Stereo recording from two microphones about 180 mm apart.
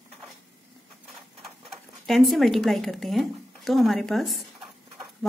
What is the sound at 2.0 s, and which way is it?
A woman's voice, centre (ahead or behind).